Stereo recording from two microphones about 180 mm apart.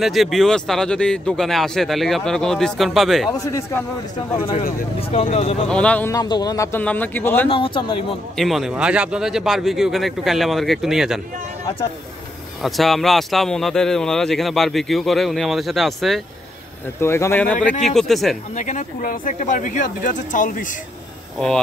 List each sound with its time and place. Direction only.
0.0 s a man's voice: centre (ahead or behind)
3.3 s speech: 15° left (ahead or behind)
5.1 s speech: 35° left (ahead or behind)
5.7 s speech: 5° left (ahead or behind)
6.1 s speech: 25° left (ahead or behind)
7.4 s speech: 30° left (ahead or behind)
8.4 s a man's voice: centre (ahead or behind)
12.6 s a man's voice: centre (ahead or behind)
17.0 s a man's voice: 15° left (ahead or behind)
18.5 s speech: 40° left (ahead or behind)